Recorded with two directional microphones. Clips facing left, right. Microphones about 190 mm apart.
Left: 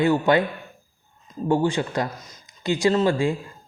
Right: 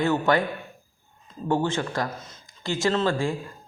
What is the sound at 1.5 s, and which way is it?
Speech, 15° left (ahead or behind).